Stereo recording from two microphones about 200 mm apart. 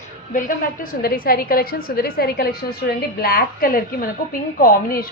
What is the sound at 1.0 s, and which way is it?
A woman's voice, 45° left (ahead or behind).